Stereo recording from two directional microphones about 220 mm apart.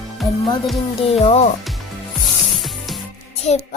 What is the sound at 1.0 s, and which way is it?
Speech, 25° left (ahead or behind).